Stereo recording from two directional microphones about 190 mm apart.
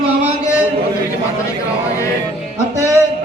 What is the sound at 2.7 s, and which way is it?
Speech, 15° right (ahead or behind).